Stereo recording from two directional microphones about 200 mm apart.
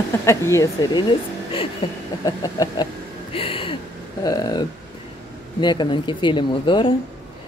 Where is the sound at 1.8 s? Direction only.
25° left (ahead or behind).